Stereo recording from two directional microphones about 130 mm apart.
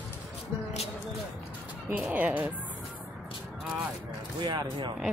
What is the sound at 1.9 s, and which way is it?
Speech, 10° right (ahead or behind).